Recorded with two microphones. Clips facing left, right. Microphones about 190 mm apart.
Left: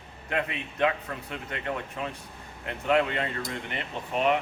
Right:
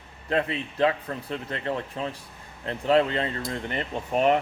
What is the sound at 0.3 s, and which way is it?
A man's voice, 30° right (ahead or behind).